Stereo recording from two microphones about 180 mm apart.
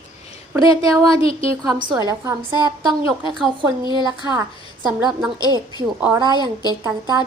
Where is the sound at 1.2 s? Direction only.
30° left (ahead or behind).